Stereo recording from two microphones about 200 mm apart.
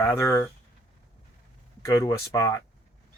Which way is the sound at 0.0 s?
15° left (ahead or behind).